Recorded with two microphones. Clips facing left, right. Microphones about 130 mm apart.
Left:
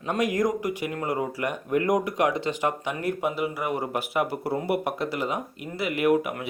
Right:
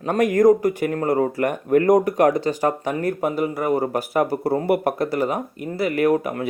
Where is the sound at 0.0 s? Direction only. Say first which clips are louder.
Right 8 dB; 45° right (ahead or behind).